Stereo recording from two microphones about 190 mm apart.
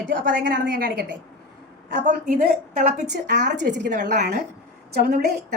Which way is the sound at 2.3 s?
45° right (ahead or behind).